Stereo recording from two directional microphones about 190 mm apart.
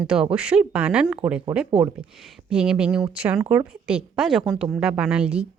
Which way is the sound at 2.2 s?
5° right (ahead or behind).